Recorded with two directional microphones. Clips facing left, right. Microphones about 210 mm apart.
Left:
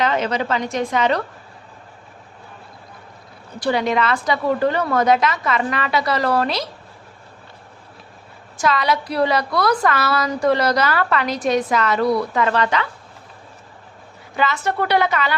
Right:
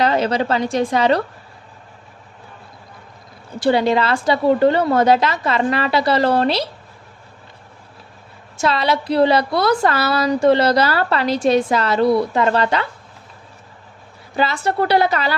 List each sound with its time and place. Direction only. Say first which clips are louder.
0.0 s a woman's voice: right 3 dB; 35° right (ahead or behind)
3.6 s a woman's voice: right 3 dB; 30° right (ahead or behind)
8.5 s a woman's voice: right 1 dB; 30° right (ahead or behind)
14.3 s a woman's voice: right 2 dB; 35° right (ahead or behind)